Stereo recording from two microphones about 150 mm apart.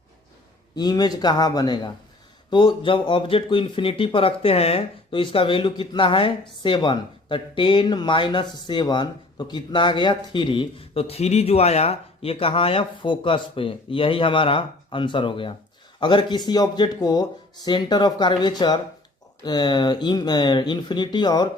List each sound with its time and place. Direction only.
0.8 s speech: 25° left (ahead or behind)